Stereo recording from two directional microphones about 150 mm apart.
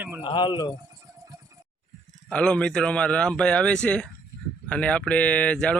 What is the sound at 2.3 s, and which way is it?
A man's voice, 5° left (ahead or behind).